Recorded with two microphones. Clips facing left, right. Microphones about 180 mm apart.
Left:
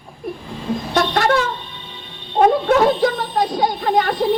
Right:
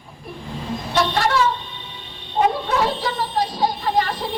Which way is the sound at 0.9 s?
50° left (ahead or behind).